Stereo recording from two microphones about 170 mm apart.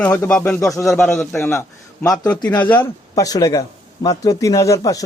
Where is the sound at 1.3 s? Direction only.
15° left (ahead or behind).